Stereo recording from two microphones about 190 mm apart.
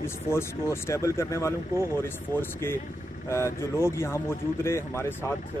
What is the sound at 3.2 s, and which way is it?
Speech, 15° left (ahead or behind).